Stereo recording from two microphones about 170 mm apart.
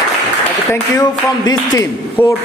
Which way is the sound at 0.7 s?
20° left (ahead or behind).